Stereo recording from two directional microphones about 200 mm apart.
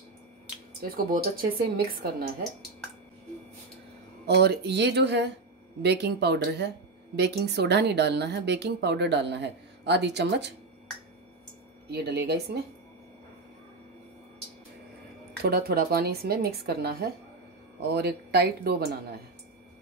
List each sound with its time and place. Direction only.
0.8 s speech: 45° right (ahead or behind)
4.3 s speech: 55° right (ahead or behind)
11.9 s speech: 55° right (ahead or behind)
15.4 s speech: 50° right (ahead or behind)